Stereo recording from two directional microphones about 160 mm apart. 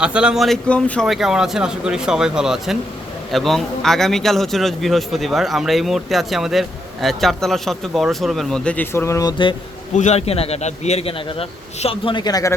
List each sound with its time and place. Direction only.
0.0 s a man's voice: 5° right (ahead or behind); by 9.3 s 20° left (ahead or behind)
9.9 s a man's voice: 45° left (ahead or behind); by 12.5 s 20° left (ahead or behind)